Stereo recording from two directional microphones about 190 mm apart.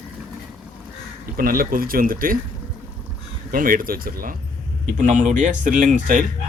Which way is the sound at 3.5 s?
50° right (ahead or behind).